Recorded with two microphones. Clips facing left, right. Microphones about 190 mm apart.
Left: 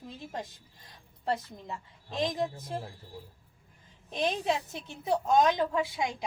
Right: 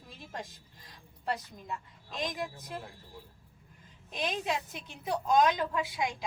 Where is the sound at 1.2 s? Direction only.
25° left (ahead or behind).